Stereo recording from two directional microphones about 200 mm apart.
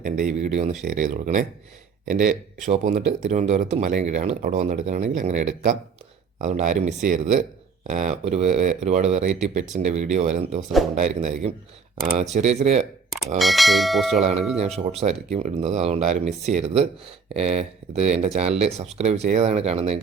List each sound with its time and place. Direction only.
0.0 s speech: 40° right (ahead or behind)
13.4 s bell: centre (ahead or behind)
14.2 s speech: 30° right (ahead or behind)